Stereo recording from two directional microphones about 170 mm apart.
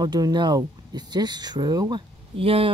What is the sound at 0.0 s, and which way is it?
Speech, 25° right (ahead or behind).